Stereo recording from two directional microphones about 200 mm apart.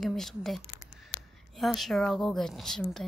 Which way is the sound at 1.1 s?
50° left (ahead or behind).